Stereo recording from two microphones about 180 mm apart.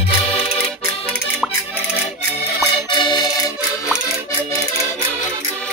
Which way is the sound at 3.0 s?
25° left (ahead or behind).